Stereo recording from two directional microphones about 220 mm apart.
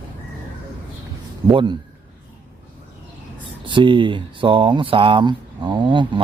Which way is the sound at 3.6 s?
20° right (ahead or behind).